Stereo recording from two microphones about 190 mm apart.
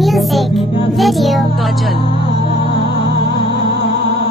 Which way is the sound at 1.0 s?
Centre (ahead or behind).